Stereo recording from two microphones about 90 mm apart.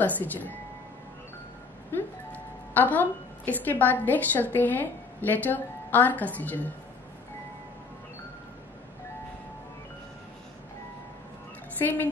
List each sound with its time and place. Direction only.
0.0 s speech: 20° left (ahead or behind)
1.9 s speech: 20° left (ahead or behind)
11.8 s speech: 20° left (ahead or behind)